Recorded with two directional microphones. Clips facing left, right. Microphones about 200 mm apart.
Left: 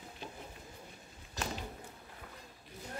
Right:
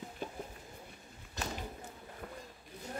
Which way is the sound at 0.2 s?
50° right (ahead or behind).